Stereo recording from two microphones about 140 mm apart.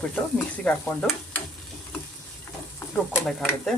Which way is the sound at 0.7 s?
5° left (ahead or behind).